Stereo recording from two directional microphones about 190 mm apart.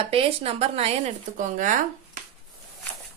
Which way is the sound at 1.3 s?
45° right (ahead or behind).